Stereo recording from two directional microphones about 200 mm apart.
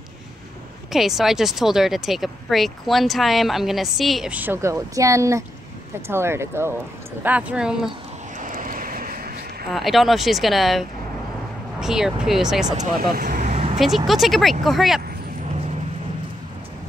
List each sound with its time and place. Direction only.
0.9 s speech: centre (ahead or behind)
8.4 s vehicle: 40° right (ahead or behind)
9.7 s speech: centre (ahead or behind)
12.7 s speech: 40° right (ahead or behind)
13.7 s speech: centre (ahead or behind)